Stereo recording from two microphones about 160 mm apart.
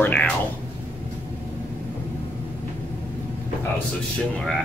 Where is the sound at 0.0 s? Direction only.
10° left (ahead or behind).